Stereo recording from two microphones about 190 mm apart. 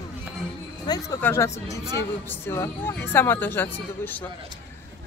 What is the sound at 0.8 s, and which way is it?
Speech, 20° left (ahead or behind).